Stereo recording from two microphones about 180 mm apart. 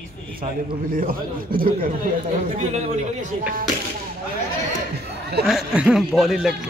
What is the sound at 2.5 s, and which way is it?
Speech, 40° right (ahead or behind).